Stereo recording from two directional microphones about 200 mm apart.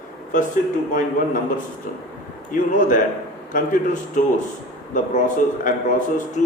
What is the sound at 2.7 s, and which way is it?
Speech, 40° left (ahead or behind).